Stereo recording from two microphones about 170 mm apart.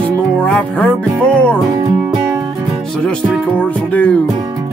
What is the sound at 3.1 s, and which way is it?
Music, 10° left (ahead or behind).